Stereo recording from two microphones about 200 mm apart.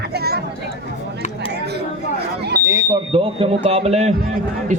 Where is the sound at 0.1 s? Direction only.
50° right (ahead or behind).